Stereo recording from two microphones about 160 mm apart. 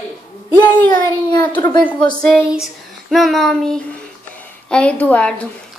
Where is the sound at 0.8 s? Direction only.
25° left (ahead or behind).